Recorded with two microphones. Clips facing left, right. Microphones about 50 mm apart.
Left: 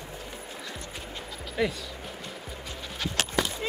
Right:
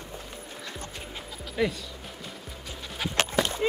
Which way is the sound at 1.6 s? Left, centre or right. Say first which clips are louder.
Right 1 dB; centre.